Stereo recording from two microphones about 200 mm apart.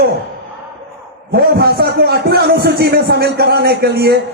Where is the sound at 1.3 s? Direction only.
50° right (ahead or behind).